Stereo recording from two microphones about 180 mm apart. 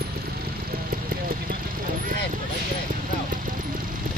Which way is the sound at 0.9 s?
55° right (ahead or behind).